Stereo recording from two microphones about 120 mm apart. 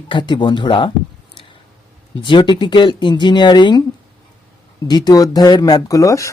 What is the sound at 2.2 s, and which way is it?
Speech, 40° left (ahead or behind).